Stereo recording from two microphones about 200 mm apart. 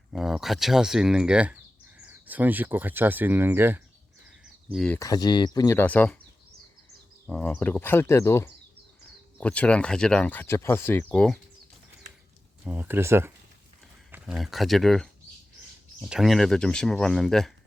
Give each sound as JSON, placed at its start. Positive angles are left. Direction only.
{"t": 0.1, "sound": "speech", "side_deg": 0}
{"t": 4.7, "sound": "speech", "side_deg": 0}
{"t": 4.9, "sound": "speech", "side_deg": 20}
{"t": 7.3, "sound": "speech", "side_deg": 5}
{"t": 12.6, "sound": "speech", "side_deg": -10}